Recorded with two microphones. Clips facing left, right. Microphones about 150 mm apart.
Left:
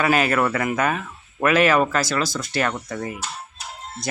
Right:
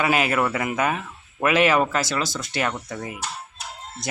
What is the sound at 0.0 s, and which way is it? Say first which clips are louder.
Speech: left 2 dB; 15° right (ahead or behind).